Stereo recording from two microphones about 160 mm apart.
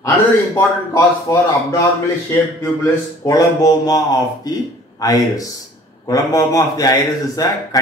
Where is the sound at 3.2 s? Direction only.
20° left (ahead or behind).